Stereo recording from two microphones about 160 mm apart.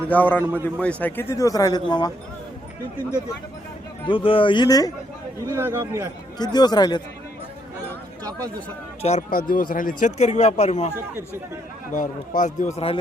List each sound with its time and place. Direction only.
0.1 s a man's voice: 10° left (ahead or behind); by 2.1 s 25° left (ahead or behind)
4.0 s speech: 35° left (ahead or behind)
5.5 s speech: 15° right (ahead or behind)
6.4 s a man's voice: 25° left (ahead or behind)
8.2 s speech: 25° right (ahead or behind)
9.0 s speech: 45° left (ahead or behind)
9.3 s speech: 65° left (ahead or behind); by 10.9 s 45° left (ahead or behind)
11.9 s speech: 55° left (ahead or behind)